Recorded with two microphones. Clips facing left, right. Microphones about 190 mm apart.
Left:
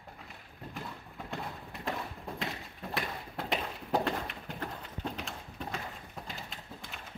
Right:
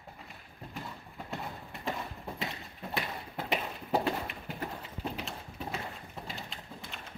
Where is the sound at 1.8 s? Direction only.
Centre (ahead or behind).